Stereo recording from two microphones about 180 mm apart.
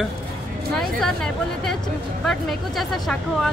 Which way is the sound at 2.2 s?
Centre (ahead or behind).